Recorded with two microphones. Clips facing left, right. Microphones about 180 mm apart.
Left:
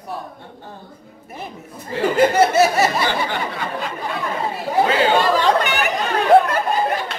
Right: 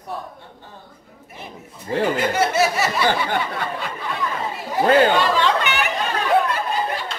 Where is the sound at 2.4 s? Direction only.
40° left (ahead or behind).